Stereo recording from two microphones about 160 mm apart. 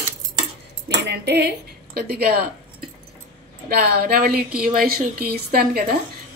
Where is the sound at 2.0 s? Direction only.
80° right.